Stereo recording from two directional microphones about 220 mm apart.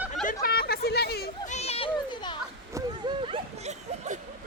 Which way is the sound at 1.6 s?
25° left (ahead or behind).